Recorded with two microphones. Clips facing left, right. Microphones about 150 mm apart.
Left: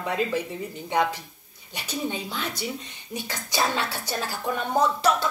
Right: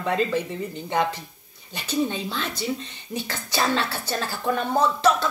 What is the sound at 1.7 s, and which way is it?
Speech, 10° left (ahead or behind).